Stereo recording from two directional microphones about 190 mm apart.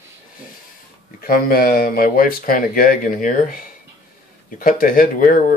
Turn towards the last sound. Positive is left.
turn(degrees=45)  # may be behind; listen again after turning